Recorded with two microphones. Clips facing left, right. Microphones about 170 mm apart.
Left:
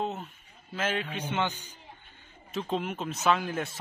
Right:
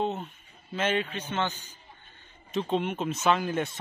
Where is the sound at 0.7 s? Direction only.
Centre (ahead or behind).